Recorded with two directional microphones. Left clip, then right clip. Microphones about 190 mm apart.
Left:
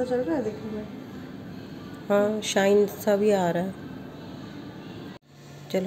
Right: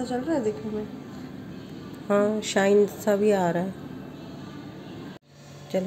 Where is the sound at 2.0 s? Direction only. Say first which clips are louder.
Even; 10° right (ahead or behind).